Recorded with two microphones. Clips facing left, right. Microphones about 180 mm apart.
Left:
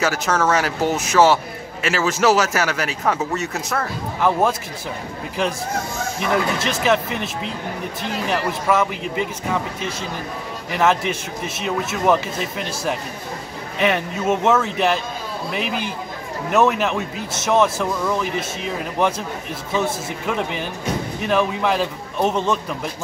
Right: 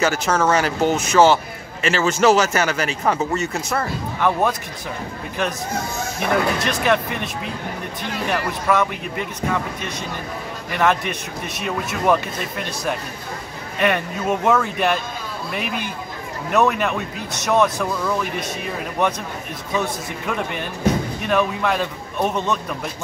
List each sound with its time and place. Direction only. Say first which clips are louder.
0.0 s a man's voice: right 1 dB; centre (ahead or behind)
6.3 s a man's voice: right 1 dB; centre (ahead or behind)
8.3 s a man's voice: even; 5° left (ahead or behind)
10.7 s a man's voice: left 1 dB; 5° left (ahead or behind)
13.7 s a man's voice: even; centre (ahead or behind)
19.8 s a man's voice: left 2 dB; 5° left (ahead or behind)
22.2 s a man's voice: left 2 dB; 25° left (ahead or behind)